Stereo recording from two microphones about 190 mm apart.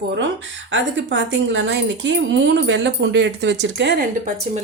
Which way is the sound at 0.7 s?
70° right (ahead or behind).